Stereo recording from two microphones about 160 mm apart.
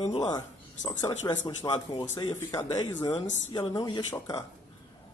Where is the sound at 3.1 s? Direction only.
45° left (ahead or behind).